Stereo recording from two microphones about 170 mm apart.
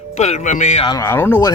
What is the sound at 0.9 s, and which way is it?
Speech, 15° left (ahead or behind).